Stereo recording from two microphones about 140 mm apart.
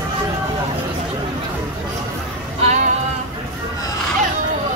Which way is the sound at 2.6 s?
55° right (ahead or behind).